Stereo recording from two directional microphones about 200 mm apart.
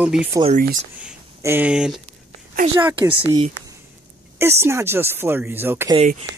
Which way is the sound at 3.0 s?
25° right (ahead or behind).